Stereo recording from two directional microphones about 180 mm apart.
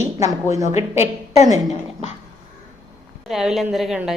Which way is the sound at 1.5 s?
40° left (ahead or behind).